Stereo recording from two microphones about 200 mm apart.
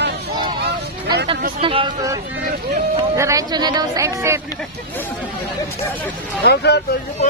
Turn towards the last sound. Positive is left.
turn(degrees=55)  # may be behind; listen again after turning